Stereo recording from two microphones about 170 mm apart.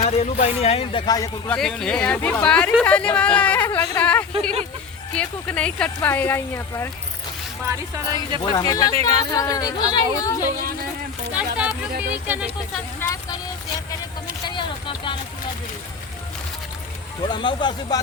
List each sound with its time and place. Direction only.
0.0 s speech: 40° left (ahead or behind)
1.0 s speech: 20° left (ahead or behind)
1.5 s speech: 5° left (ahead or behind)
7.7 s speech: 25° right (ahead or behind)
8.5 s speech: 20° left (ahead or behind)
8.9 s speech: 35° right (ahead or behind)
9.3 s speech: 20° left (ahead or behind)
11.3 s a sound: 10° right (ahead or behind)
12.0 s speech: 10° right (ahead or behind)
13.0 s a sound: 20° left (ahead or behind)
14.4 s a sound: 30° left (ahead or behind)
17.2 s speech: 25° left (ahead or behind)